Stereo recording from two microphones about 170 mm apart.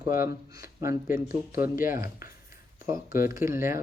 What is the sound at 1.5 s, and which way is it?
Speech, 55° left (ahead or behind).